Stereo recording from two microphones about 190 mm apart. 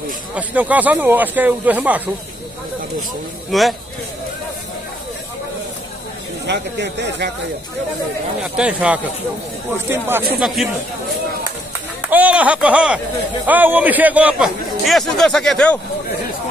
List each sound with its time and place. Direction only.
0.4 s speech: 10° right (ahead or behind)
3.5 s a man's voice: centre (ahead or behind)
6.4 s speech: 65° right (ahead or behind)
8.5 s a man's voice: 5° right (ahead or behind)
12.0 s a man's voice: 10° right (ahead or behind)